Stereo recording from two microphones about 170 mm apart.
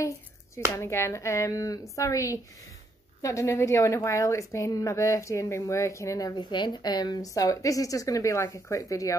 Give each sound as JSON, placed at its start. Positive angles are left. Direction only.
{"t": 0.7, "sound": "a woman's voice", "side_deg": 15}